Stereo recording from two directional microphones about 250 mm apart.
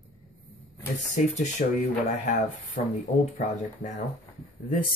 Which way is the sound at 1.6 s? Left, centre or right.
Left.